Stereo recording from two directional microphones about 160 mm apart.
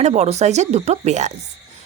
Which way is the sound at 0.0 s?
45° right (ahead or behind).